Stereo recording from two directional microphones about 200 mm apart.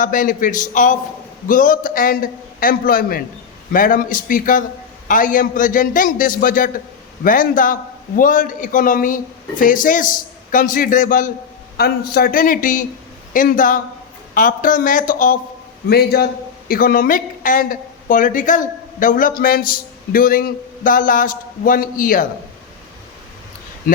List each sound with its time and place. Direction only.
0.0 s a man's voice: 40° left (ahead or behind)
11.8 s a man's voice: 50° left (ahead or behind)
15.9 s speech: 50° left (ahead or behind)